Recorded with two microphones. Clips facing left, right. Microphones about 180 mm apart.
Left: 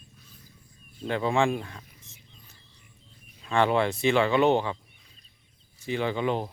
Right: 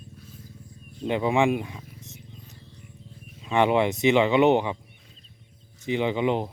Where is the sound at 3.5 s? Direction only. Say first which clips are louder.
Right 2 dB; 20° right (ahead or behind).